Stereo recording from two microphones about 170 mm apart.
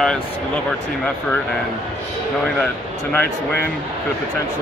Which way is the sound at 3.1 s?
10° left (ahead or behind).